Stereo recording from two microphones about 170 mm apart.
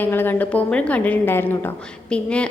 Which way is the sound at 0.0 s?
10° left (ahead or behind).